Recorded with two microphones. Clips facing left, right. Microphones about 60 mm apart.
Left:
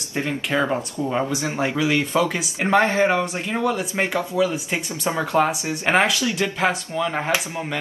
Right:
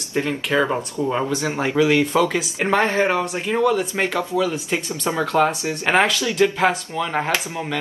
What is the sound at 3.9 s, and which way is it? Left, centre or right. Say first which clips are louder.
Speech: right 1 dB; centre.